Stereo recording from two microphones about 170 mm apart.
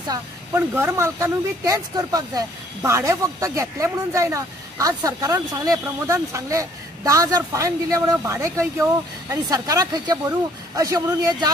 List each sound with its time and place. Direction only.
0.1 s speech: 15° right (ahead or behind)